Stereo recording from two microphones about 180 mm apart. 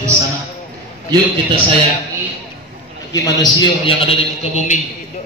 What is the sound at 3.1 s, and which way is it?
Speech, 20° left (ahead or behind).